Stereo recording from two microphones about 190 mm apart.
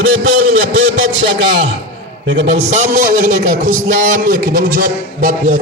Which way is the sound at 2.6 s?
40° right (ahead or behind).